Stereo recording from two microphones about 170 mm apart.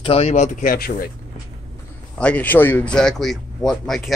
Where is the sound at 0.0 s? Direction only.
35° left (ahead or behind); by 1.1 s 60° left (ahead or behind).